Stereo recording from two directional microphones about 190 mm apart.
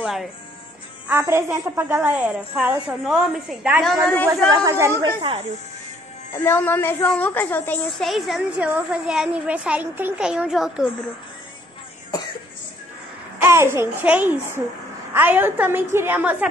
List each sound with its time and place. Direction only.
0.0 s speech: centre (ahead or behind)
1.0 s a woman's voice: 10° right (ahead or behind)
4.3 s a woman's voice: 15° right (ahead or behind)
6.3 s a woman's voice: 10° left (ahead or behind)
13.4 s a woman's voice: 15° right (ahead or behind)